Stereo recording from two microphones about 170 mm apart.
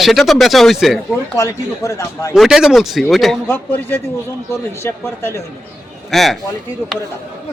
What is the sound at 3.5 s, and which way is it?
Speech, 10° left (ahead or behind).